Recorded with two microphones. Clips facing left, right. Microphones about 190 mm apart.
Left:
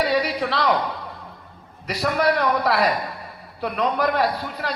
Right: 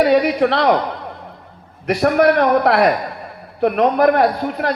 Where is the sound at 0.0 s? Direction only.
55° right (ahead or behind).